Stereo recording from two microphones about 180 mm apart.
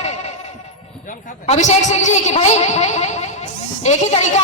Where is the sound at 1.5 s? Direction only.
40° left (ahead or behind).